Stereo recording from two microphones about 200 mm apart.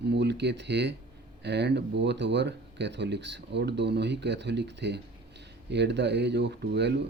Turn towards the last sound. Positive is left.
turn(degrees=-60)  # may be behind; listen again after turning